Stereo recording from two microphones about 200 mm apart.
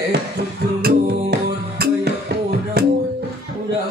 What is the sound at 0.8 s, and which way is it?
Music, 55° right (ahead or behind).